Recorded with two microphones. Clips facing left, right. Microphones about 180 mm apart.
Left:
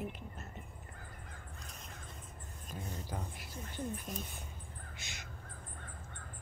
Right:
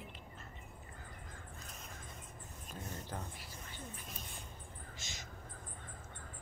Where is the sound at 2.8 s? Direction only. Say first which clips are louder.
Left 2 dB; 10° left (ahead or behind).